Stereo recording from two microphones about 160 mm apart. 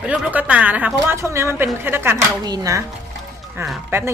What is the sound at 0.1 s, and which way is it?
Speech, 10° right (ahead or behind).